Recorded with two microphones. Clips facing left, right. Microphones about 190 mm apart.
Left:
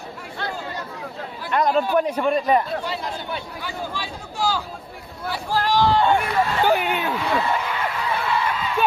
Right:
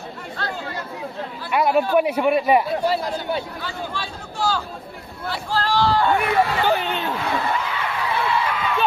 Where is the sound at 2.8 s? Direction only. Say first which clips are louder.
Right 6 dB; 35° right (ahead or behind).